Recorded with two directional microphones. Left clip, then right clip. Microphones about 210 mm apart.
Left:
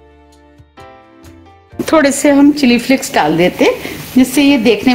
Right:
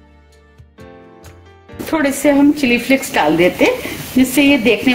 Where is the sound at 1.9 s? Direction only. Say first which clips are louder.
Left 5 dB; 50° left (ahead or behind).